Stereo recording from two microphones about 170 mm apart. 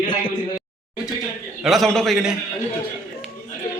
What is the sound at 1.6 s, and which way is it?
Speech, centre (ahead or behind).